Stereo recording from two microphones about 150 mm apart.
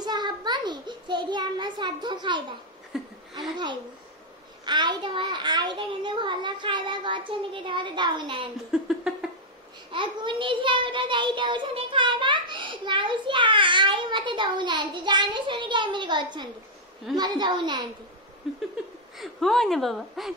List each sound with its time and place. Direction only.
0.0 s a sound: 30° right (ahead or behind)
2.9 s a woman's voice: 5° right (ahead or behind)
3.3 s a woman's voice: 30° right (ahead or behind)
8.7 s a sound: 5° right (ahead or behind)
9.8 s a child's voice: 35° right (ahead or behind)
19.1 s a woman's voice: centre (ahead or behind)